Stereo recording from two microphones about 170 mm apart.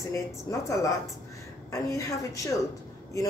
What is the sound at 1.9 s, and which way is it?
Speech, 20° left (ahead or behind).